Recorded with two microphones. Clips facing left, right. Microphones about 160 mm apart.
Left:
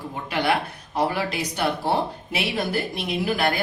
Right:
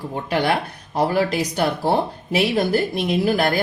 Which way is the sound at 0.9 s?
40° right (ahead or behind).